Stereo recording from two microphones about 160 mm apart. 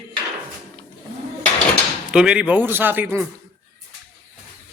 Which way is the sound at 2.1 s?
5° right (ahead or behind).